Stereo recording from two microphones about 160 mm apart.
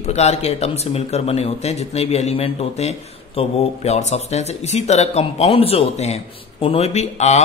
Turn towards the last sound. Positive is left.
turn(degrees=45)  # may be behind; listen again after turning